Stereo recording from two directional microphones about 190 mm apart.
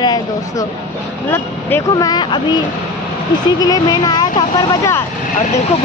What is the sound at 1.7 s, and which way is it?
Speech, 20° left (ahead or behind).